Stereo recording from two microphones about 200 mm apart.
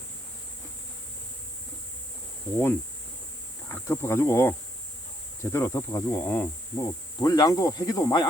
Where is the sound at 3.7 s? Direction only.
10° left (ahead or behind).